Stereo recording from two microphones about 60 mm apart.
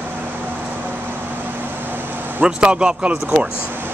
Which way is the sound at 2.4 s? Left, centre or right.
Centre.